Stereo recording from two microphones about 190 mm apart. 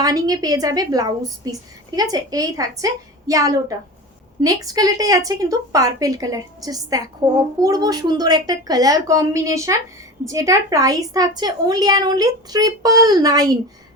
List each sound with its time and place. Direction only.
0.0 s a woman's voice: 20° right (ahead or behind)